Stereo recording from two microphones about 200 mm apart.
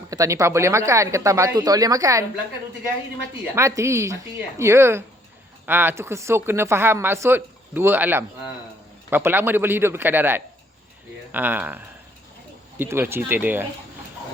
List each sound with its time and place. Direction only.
0.1 s speech: 15° right (ahead or behind)
3.5 s speech: 15° right (ahead or behind)
12.8 s speech: 10° right (ahead or behind)